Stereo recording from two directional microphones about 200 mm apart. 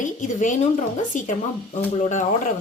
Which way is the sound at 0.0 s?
40° left (ahead or behind).